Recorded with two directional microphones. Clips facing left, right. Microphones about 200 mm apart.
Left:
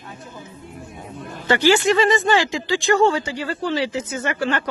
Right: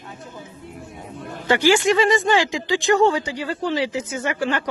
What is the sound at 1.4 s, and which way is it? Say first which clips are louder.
Speech: even; 10° right (ahead or behind).